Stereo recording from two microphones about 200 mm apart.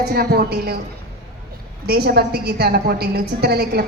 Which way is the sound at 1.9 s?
55° right (ahead or behind).